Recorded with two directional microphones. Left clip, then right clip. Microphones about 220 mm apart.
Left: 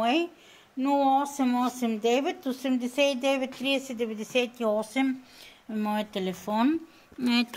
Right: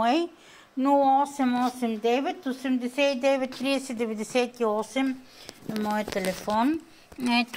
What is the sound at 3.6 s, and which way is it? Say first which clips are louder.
A woman's voice: right 1 dB; 15° right (ahead or behind).